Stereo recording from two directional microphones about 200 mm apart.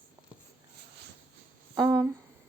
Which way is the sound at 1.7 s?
15° right (ahead or behind).